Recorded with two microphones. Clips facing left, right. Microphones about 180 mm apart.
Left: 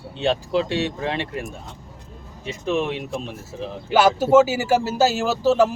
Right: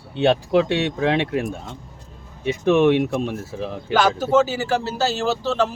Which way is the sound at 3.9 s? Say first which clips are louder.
Left 3 dB; 10° left (ahead or behind).